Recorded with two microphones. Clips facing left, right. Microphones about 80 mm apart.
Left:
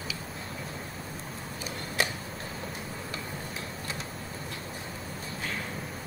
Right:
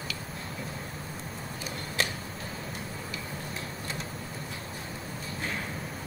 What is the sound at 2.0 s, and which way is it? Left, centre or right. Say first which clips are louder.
Tick-tock: left 1 dB; centre.